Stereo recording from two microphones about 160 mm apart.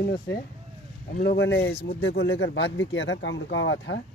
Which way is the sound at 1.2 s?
85° left.